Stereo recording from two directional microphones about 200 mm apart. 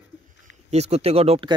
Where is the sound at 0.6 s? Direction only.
35° right (ahead or behind).